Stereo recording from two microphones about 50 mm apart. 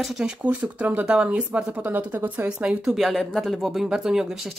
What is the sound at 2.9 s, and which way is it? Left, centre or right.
Speech, centre.